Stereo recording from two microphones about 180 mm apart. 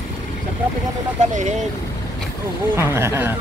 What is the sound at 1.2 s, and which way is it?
Speech, 40° right (ahead or behind).